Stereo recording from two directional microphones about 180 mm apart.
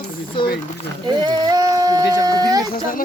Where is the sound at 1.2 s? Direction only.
20° right (ahead or behind).